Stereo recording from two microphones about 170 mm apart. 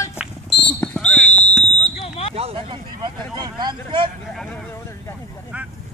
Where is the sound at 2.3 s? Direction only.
35° right (ahead or behind).